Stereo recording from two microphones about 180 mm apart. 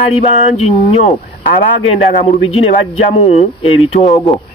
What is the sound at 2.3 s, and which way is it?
Speech, 35° left (ahead or behind).